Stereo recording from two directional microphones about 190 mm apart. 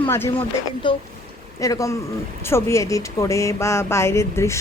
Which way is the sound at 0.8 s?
25° left (ahead or behind).